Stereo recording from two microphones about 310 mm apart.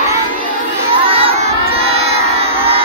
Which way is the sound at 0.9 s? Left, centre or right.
Centre.